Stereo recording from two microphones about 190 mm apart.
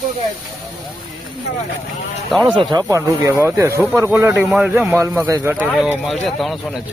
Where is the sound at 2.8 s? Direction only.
15° right (ahead or behind).